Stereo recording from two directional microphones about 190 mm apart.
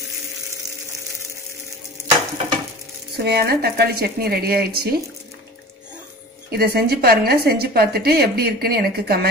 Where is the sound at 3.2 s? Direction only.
55° right (ahead or behind).